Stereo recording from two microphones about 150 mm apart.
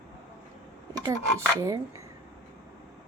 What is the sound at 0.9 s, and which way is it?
Speech, 25° right (ahead or behind).